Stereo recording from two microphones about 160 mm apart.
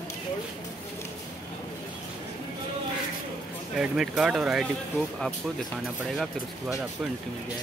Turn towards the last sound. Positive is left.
turn(degrees=0)  # may be behind; listen again after turning